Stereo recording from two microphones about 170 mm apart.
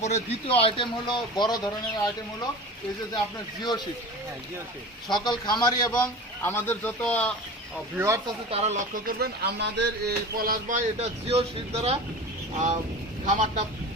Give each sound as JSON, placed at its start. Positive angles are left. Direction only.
{"t": 0.0, "sound": "a man's voice", "side_deg": 40}
{"t": 5.1, "sound": "a man's voice", "side_deg": 25}
{"t": 6.4, "sound": "a man's voice", "side_deg": 15}
{"t": 7.9, "sound": "speech", "side_deg": -15}
{"t": 8.4, "sound": "speech", "side_deg": -35}
{"t": 9.0, "sound": "speech", "side_deg": -65}